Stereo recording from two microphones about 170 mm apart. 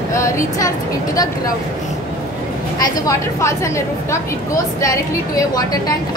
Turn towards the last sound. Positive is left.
turn(degrees=20)  # may be behind; listen again after turning